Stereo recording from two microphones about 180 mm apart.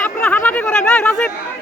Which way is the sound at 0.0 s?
10° left (ahead or behind).